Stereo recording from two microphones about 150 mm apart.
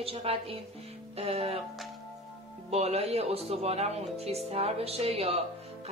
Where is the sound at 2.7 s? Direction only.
45° right (ahead or behind).